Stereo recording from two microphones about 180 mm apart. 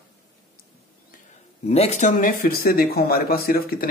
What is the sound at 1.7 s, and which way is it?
Speech, 35° left (ahead or behind).